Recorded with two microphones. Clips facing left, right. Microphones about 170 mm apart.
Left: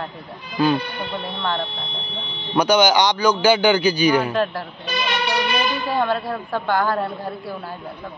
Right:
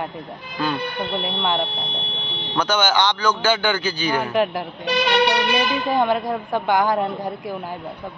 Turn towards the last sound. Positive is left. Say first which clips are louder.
# right 2 dB
turn(degrees=-15)  # may be behind; listen again after turning